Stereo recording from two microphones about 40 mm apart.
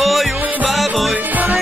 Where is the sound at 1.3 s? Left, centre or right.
Right.